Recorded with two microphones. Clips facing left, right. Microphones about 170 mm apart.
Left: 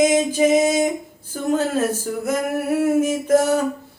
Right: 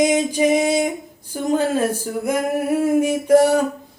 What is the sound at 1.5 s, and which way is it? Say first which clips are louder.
Speech: right 1 dB; 15° right (ahead or behind).